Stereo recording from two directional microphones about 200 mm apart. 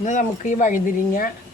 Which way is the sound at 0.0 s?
40° left (ahead or behind).